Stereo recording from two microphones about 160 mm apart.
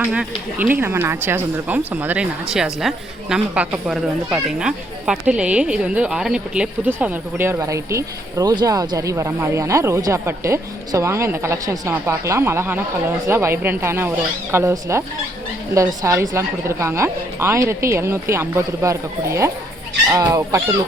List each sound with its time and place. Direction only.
0.0 s a woman's voice: 5° right (ahead or behind)